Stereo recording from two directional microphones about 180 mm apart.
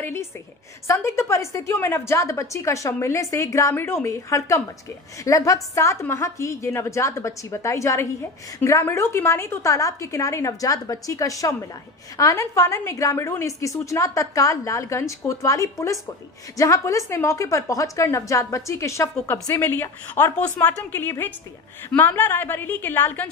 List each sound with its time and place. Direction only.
0.0 s a woman's voice: 15° left (ahead or behind)